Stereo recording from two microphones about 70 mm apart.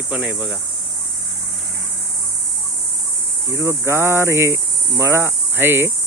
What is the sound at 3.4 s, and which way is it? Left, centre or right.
Cricket, right.